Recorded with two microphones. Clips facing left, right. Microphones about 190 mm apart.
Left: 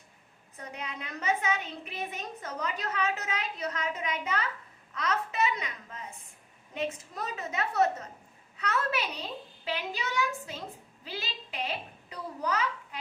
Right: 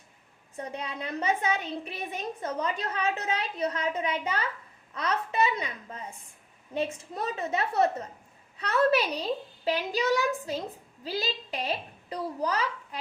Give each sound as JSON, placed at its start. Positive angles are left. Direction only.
{"t": 0.5, "sound": "a woman's voice", "side_deg": -30}
{"t": 7.2, "sound": "a woman's voice", "side_deg": -30}